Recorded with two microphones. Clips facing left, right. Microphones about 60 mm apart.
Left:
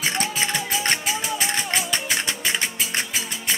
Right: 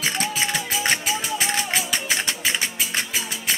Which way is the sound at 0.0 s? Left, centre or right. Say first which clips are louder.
Even; centre.